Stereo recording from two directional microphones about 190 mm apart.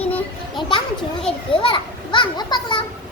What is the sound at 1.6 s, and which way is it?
A child's voice, 25° left (ahead or behind).